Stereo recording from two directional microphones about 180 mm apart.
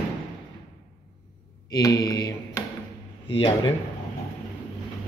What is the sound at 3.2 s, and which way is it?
Speech, 30° left (ahead or behind).